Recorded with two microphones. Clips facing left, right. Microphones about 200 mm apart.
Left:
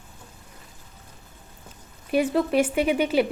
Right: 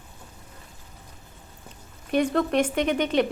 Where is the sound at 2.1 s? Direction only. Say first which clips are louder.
Left 1 dB; 5° left (ahead or behind).